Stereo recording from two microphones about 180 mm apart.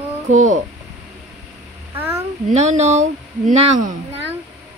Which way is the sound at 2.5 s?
40° right (ahead or behind).